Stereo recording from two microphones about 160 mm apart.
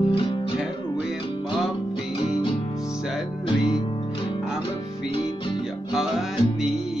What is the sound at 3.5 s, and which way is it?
Music, 30° left (ahead or behind).